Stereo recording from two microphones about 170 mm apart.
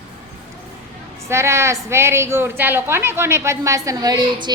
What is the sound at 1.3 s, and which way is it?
A woman's voice, 15° right (ahead or behind).